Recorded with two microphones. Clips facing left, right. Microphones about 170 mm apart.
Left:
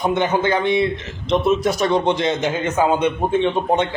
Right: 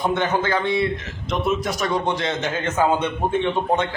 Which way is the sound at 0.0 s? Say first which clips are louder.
Left 3 dB; 15° left (ahead or behind).